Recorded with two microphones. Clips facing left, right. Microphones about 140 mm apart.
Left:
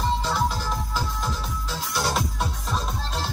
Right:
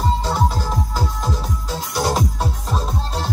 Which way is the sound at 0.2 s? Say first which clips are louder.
Right 4 dB; 40° right (ahead or behind).